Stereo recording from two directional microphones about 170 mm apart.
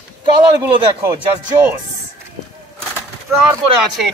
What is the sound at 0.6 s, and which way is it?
Speech, 20° right (ahead or behind).